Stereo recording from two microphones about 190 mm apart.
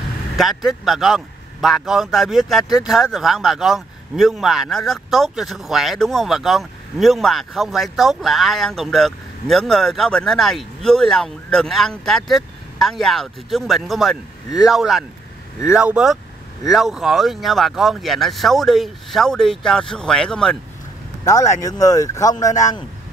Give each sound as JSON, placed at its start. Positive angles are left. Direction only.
{"t": 0.4, "sound": "speech", "side_deg": 0}
{"t": 21.2, "sound": "a man's voice", "side_deg": 15}